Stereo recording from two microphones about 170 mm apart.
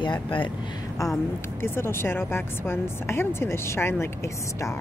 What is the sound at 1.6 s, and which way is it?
Speech, 15° left (ahead or behind).